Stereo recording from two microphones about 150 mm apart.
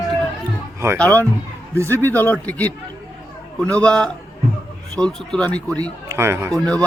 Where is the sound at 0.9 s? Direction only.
10° left (ahead or behind).